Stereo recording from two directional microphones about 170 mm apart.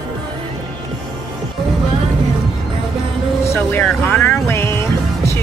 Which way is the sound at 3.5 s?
10° left (ahead or behind).